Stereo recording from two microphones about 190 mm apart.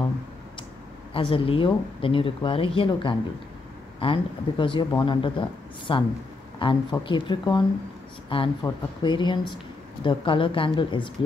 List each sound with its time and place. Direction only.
1.1 s speech: 30° left (ahead or behind)